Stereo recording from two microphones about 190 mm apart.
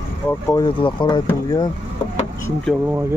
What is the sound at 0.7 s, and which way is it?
Speech, 25° left (ahead or behind).